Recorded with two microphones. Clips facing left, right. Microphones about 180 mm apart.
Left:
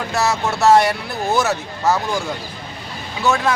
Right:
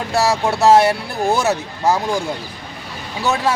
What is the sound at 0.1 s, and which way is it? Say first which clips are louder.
Speech: right 3 dB; 30° right (ahead or behind).